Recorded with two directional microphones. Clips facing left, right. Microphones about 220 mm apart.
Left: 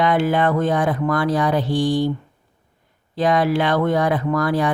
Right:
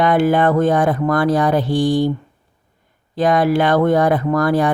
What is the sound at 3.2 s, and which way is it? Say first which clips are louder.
Speech: right 3 dB; 45° right (ahead or behind).